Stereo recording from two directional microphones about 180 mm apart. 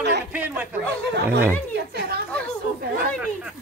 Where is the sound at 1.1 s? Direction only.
70° right (ahead or behind).